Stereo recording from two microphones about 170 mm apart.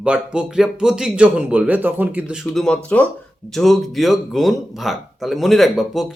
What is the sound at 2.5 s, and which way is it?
Speech, 5° left (ahead or behind).